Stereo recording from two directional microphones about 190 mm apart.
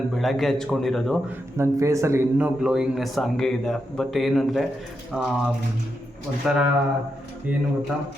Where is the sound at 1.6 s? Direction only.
15° right (ahead or behind); by 4.6 s centre (ahead or behind).